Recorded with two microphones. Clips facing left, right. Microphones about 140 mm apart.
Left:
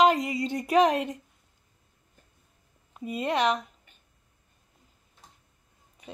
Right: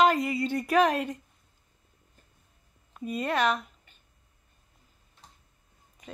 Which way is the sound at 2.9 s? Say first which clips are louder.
Left 1 dB; 15° left (ahead or behind).